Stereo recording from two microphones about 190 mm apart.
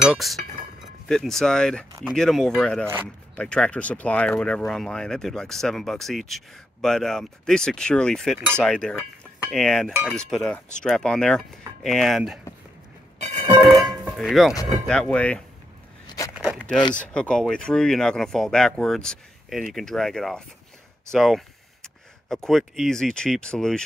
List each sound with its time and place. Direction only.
0.0 s speech: centre (ahead or behind)
13.2 s music: 30° right (ahead or behind)
14.0 s speech: centre (ahead or behind)
16.5 s a sound: 5° left (ahead or behind)
16.9 s speech: 5° left (ahead or behind)